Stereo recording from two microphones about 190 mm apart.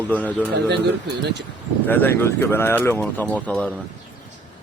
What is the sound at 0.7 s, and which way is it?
Speech, 60° right (ahead or behind).